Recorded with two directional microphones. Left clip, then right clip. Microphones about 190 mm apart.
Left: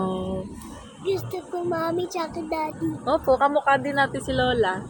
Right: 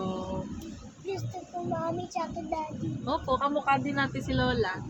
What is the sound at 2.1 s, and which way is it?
Speech, 25° left (ahead or behind).